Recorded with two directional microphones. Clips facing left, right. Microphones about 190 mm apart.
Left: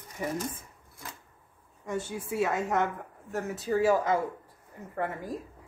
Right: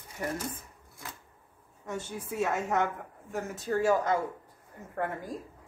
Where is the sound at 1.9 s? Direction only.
10° left (ahead or behind).